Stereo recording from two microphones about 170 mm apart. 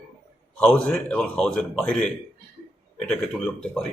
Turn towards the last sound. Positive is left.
turn(degrees=5)  # may be behind; listen again after turning